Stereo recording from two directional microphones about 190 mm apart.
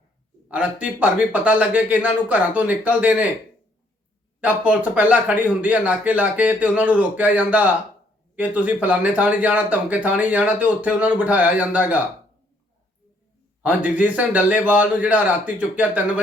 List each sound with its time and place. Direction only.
0.4 s speech: 5° right (ahead or behind)
4.4 s speech: 5° right (ahead or behind)
13.6 s speech: 5° right (ahead or behind)